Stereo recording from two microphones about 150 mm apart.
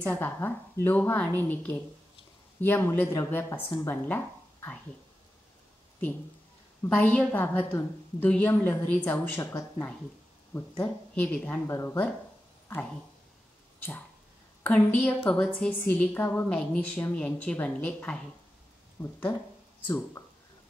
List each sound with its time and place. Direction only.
0.0 s a woman's voice: 10° left (ahead or behind)
6.8 s a woman's voice: 10° left (ahead or behind)
13.7 s a sound: 15° left (ahead or behind)
14.6 s a woman's voice: 10° left (ahead or behind)